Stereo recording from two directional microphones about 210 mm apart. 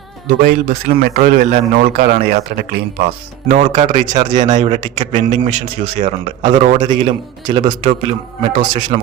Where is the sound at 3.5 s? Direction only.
35° right (ahead or behind).